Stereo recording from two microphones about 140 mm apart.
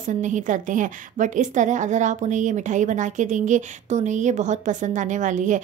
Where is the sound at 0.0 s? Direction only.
65° right (ahead or behind).